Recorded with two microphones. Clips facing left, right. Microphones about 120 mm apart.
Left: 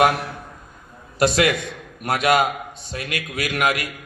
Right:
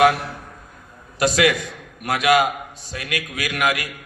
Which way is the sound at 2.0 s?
30° left (ahead or behind).